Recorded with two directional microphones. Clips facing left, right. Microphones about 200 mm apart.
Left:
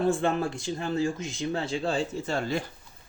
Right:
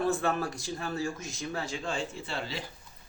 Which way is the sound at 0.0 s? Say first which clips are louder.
Left 4 dB; 25° left (ahead or behind).